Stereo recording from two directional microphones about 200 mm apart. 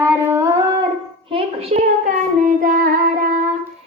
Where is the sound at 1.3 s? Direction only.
30° right (ahead or behind).